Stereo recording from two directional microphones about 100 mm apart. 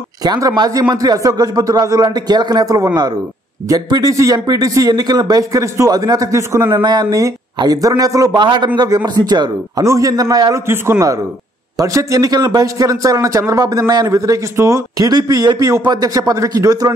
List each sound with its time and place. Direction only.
0.2 s a man's voice: 40° right (ahead or behind)
8.4 s a man's voice: 50° right (ahead or behind)
11.8 s a man's voice: 35° right (ahead or behind)